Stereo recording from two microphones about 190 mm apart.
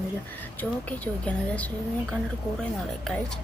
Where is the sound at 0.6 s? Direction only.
10° left (ahead or behind).